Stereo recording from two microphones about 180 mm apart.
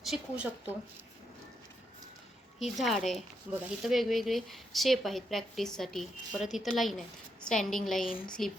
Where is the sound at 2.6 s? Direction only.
Centre (ahead or behind).